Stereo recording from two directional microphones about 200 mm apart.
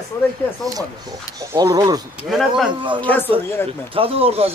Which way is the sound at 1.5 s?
20° right (ahead or behind).